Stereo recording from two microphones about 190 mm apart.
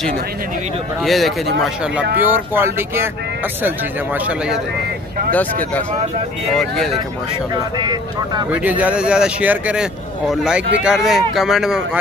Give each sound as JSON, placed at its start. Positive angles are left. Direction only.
{"t": 1.0, "sound": "a man's voice", "side_deg": 0}
{"t": 6.5, "sound": "a man's voice", "side_deg": 0}
{"t": 7.5, "sound": "speech", "side_deg": -20}
{"t": 8.5, "sound": "a man's voice", "side_deg": -10}